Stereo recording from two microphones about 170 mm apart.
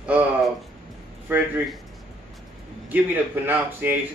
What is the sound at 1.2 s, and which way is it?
Speech, 10° right (ahead or behind).